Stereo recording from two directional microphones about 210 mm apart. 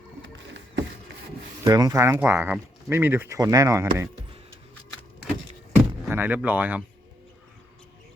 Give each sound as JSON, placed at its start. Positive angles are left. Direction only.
{"t": 0.2, "sound": "vehicle", "side_deg": -60}
{"t": 1.6, "sound": "speech", "side_deg": -15}
{"t": 6.1, "sound": "speech", "side_deg": -10}